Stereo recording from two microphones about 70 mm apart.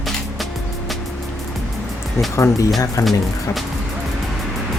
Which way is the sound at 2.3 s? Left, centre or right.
Left.